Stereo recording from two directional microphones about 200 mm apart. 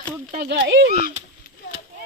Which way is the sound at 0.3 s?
50° right (ahead or behind).